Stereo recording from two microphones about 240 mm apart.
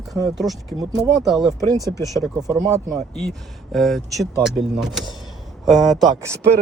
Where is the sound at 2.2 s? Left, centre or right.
Centre.